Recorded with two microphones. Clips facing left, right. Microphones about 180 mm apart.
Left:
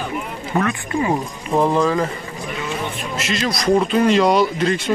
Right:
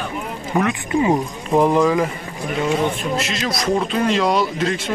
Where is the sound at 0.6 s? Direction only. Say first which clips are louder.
Right 2 dB; 20° right (ahead or behind).